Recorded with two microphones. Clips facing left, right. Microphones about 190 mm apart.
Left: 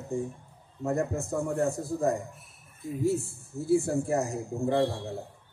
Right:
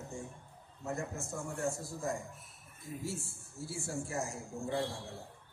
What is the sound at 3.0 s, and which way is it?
Speech, 60° left (ahead or behind).